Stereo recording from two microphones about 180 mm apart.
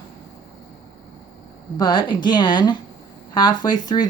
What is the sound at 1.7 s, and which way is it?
Speech, 25° left (ahead or behind).